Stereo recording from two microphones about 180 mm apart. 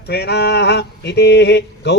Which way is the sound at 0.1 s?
65° left (ahead or behind).